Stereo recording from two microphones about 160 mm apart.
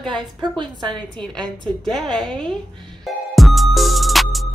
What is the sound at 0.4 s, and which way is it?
Speech, 30° right (ahead or behind).